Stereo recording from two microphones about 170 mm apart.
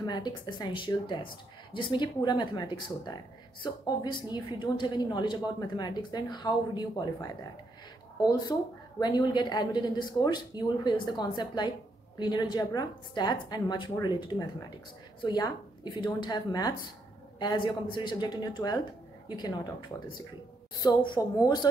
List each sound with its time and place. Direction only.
0.0 s speech: 25° left (ahead or behind)
8.3 s a woman's voice: 25° left (ahead or behind)
20.8 s speech: 25° left (ahead or behind)